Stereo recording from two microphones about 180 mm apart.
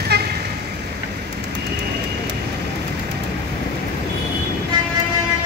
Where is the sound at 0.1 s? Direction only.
65° right (ahead or behind).